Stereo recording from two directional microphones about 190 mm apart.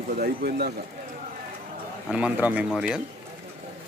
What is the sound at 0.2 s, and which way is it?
Speech, 55° right (ahead or behind).